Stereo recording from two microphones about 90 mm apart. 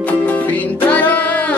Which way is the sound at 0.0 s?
15° left (ahead or behind).